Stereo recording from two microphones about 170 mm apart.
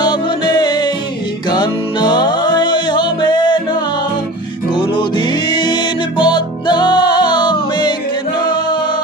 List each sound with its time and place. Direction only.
0.0 s music: 25° left (ahead or behind)